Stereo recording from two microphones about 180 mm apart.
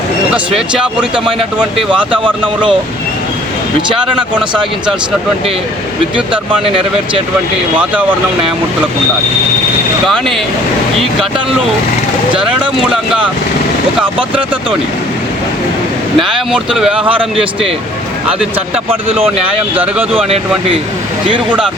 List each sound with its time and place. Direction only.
0.8 s speech: 5° right (ahead or behind)
2.2 s speech: 25° right (ahead or behind)
10.1 s speech: centre (ahead or behind)
12.9 s speech: 5° right (ahead or behind)
16.2 s speech: centre (ahead or behind)
19.0 s speech: 35° right (ahead or behind)
19.7 s speech: 10° right (ahead or behind)
20.1 s speech: 35° right (ahead or behind)